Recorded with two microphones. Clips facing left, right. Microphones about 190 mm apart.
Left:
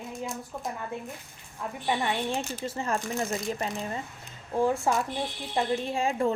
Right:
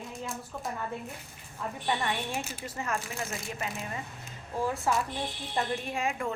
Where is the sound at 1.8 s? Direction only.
20° left (ahead or behind).